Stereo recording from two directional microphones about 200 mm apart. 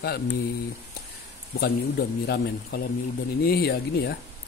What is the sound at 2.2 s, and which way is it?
Speech, 55° left (ahead or behind).